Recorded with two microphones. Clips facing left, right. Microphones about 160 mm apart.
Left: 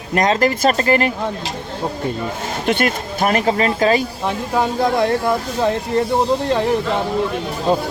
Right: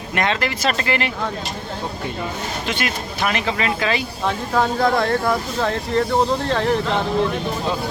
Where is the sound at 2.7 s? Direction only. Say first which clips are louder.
Left 9 dB; 50° left (ahead or behind).